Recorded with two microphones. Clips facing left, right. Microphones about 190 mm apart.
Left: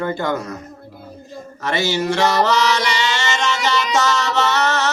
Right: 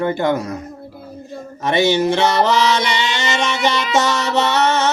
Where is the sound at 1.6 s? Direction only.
20° right (ahead or behind).